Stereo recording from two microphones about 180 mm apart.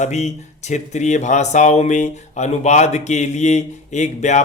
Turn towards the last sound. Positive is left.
turn(degrees=40)  # may be behind; listen again after turning